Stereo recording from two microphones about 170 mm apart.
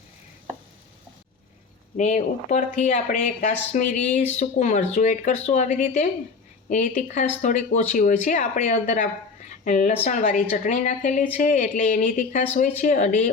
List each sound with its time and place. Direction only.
2.0 s speech: 45° left (ahead or behind)